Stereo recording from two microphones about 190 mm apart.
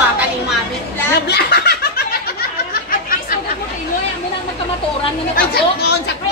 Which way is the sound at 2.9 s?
50° left (ahead or behind).